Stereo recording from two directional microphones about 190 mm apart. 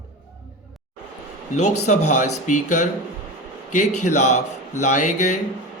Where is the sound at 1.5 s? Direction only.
40° left (ahead or behind).